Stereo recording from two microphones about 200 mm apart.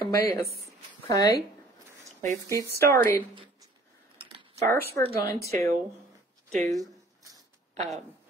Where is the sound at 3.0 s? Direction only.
45° right (ahead or behind).